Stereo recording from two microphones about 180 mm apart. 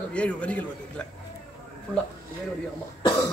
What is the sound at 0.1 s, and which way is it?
Speech, 5° left (ahead or behind).